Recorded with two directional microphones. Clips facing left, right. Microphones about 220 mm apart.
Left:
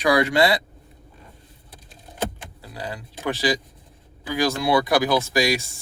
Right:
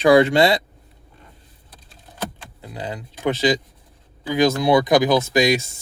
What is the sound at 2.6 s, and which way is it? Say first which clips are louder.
Speech: right 3 dB; 20° right (ahead or behind).